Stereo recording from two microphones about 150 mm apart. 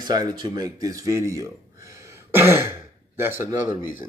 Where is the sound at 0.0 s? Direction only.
25° right (ahead or behind).